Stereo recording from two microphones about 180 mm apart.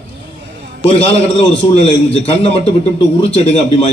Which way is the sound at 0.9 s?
35° left (ahead or behind).